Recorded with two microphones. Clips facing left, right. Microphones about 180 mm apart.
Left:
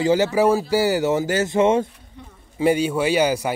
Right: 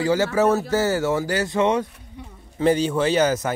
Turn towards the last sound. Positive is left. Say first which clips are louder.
# even
turn(degrees=10)  # may be behind; listen again after turning